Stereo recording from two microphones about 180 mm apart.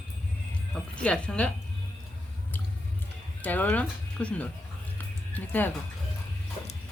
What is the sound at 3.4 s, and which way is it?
Speech, 10° left (ahead or behind).